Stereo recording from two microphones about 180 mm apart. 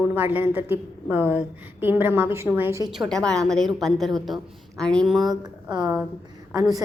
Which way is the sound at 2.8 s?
Centre (ahead or behind).